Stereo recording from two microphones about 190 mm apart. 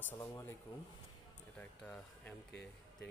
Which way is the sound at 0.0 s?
15° left (ahead or behind).